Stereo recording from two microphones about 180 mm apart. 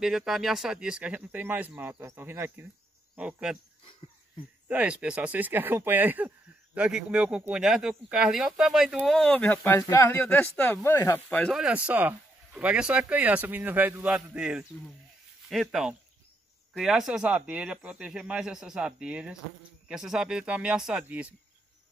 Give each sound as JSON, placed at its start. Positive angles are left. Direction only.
{"t": 0.0, "sound": "speech", "side_deg": 0}
{"t": 4.6, "sound": "speech", "side_deg": -5}